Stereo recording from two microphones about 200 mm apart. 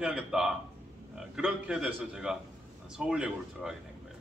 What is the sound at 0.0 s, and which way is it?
Speech, 5° right (ahead or behind).